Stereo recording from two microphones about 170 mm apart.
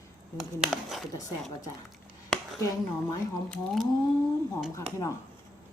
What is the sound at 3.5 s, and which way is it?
Speech, centre (ahead or behind).